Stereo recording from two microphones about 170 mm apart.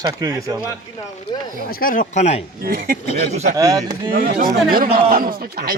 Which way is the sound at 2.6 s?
60° right (ahead or behind).